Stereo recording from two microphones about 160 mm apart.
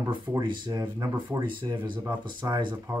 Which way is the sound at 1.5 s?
30° right (ahead or behind).